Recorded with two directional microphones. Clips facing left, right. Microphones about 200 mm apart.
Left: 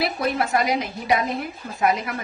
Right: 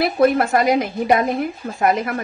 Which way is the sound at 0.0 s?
50° right (ahead or behind).